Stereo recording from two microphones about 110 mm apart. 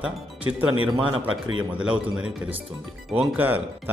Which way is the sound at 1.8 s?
10° right (ahead or behind).